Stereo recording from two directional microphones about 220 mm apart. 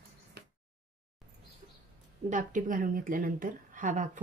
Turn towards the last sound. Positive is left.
turn(degrees=-35)  # may be behind; listen again after turning